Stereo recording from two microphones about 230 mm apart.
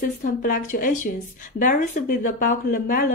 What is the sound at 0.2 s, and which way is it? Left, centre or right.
Speech, left.